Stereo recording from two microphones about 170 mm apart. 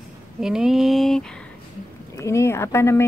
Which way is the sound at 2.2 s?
15° left (ahead or behind).